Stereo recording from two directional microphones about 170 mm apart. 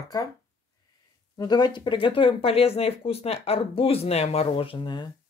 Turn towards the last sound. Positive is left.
turn(degrees=25)  # may be behind; listen again after turning